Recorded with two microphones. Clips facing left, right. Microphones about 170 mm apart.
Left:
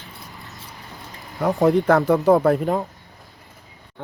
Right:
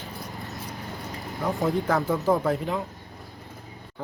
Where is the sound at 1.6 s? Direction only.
75° left (ahead or behind).